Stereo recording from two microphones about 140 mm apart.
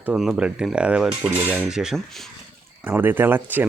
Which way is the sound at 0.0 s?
5° right (ahead or behind).